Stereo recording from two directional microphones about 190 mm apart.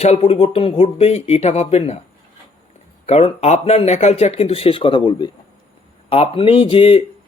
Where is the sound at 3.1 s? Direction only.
30° left (ahead or behind).